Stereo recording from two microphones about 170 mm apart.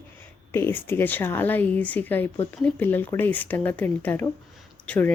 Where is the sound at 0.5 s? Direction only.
10° left (ahead or behind).